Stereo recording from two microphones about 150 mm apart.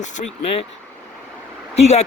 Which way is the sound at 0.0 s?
55° left (ahead or behind).